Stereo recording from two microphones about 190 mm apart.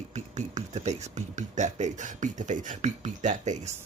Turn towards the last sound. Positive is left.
turn(degrees=-40)  # may be behind; listen again after turning